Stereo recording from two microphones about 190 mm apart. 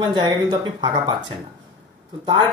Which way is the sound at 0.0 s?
25° right (ahead or behind).